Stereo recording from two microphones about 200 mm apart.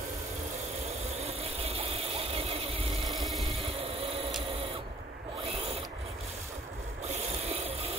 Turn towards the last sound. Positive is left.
turn(degrees=-30)  # may be behind; listen again after turning